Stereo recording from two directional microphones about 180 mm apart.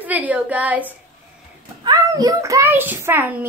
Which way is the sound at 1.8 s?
20° right (ahead or behind).